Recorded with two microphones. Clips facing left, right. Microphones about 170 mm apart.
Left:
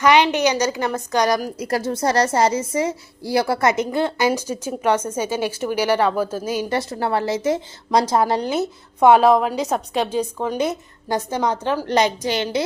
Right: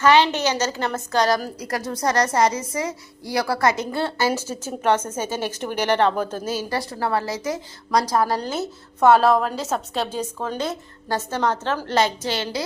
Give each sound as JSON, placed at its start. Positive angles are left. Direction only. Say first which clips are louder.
{"t": 0.0, "sound": "a woman's voice", "louder": "left 1 dB", "side_deg": 15}